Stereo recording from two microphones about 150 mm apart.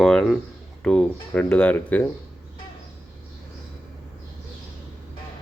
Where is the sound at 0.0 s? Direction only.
5° left (ahead or behind).